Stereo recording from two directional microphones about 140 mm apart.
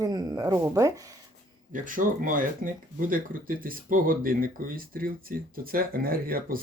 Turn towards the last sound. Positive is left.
turn(degrees=-90)